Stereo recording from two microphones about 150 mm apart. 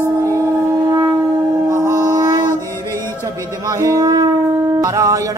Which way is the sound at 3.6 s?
20° right (ahead or behind).